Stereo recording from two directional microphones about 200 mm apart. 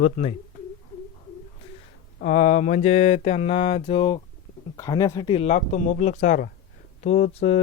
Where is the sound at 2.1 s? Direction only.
35° left (ahead or behind).